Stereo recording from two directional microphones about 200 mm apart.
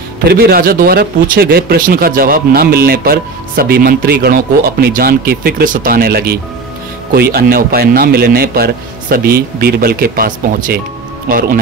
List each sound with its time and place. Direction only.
0.2 s speech: 50° right (ahead or behind)